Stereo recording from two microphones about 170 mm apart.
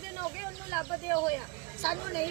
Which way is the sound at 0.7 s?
20° left (ahead or behind).